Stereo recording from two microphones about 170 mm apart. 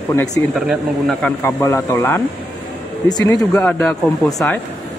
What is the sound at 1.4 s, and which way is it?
Speech, 20° left (ahead or behind).